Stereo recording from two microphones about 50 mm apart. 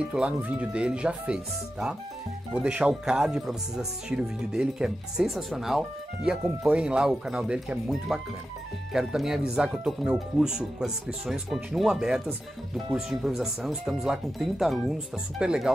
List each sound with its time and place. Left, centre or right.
0.0 s speech: centre
0.4 s speech: right; by 5.9 s centre
6.7 s speech: centre
15.4 s speech: centre